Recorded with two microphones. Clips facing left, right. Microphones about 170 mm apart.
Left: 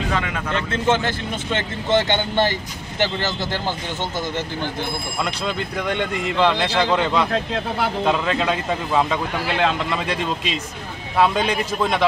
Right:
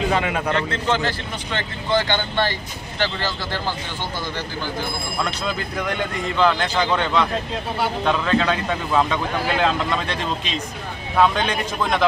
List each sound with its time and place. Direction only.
0.7 s speech: 20° left (ahead or behind)
5.9 s speech: 5° left (ahead or behind)
11.1 s speech: 5° left (ahead or behind)